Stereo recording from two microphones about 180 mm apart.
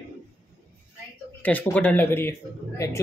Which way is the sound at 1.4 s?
10° left (ahead or behind).